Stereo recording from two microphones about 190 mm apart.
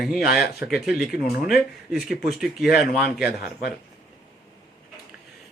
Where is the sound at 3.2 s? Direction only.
55° left (ahead or behind).